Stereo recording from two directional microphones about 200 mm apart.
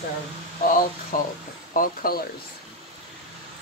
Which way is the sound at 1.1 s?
40° left (ahead or behind).